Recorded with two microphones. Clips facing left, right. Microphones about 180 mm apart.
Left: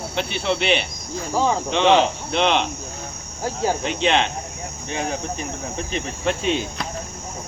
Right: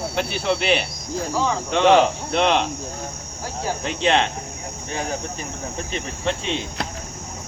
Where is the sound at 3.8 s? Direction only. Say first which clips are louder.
Right 3 dB; 35° right (ahead or behind).